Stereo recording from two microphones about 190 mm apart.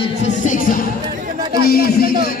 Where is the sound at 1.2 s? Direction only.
45° right (ahead or behind).